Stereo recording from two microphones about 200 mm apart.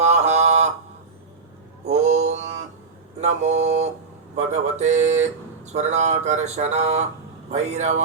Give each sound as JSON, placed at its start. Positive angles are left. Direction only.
{"t": 0.0, "sound": "a sound", "side_deg": -35}
{"t": 1.8, "sound": "mantra", "side_deg": -35}
{"t": 4.4, "sound": "speech", "side_deg": -35}